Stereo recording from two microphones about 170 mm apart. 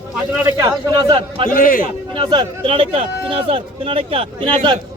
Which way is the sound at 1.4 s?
55° left (ahead or behind).